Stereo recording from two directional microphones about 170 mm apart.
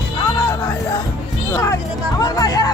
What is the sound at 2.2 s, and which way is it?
Speech, 20° left (ahead or behind).